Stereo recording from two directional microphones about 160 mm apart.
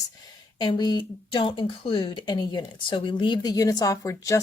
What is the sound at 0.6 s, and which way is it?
Speech, 25° left (ahead or behind).